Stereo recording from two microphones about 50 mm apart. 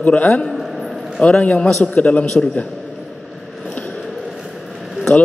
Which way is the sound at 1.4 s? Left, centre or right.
Left.